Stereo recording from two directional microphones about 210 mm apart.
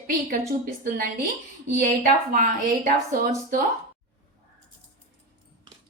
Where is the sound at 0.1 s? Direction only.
40° right (ahead or behind).